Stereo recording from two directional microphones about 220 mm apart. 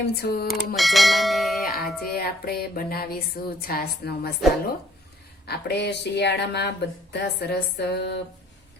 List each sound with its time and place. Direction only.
0.2 s a woman's voice: 45° left (ahead or behind)
0.8 s speech: centre (ahead or behind)
1.6 s a woman's voice: 45° left (ahead or behind)
5.5 s a woman's voice: 50° left (ahead or behind)